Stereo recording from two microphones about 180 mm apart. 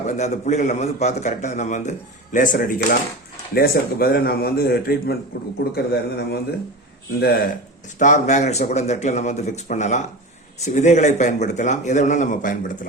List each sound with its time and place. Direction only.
0.1 s a man's voice: 40° left (ahead or behind); by 7.4 s 60° left (ahead or behind)
7.9 s a man's voice: 45° left (ahead or behind)